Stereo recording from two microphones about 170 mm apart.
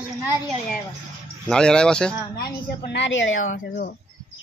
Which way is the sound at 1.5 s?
5° left (ahead or behind).